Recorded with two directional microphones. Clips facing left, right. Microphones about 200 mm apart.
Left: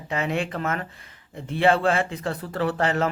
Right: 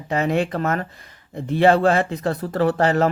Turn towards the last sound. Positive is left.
turn(degrees=-40)  # may be behind; listen again after turning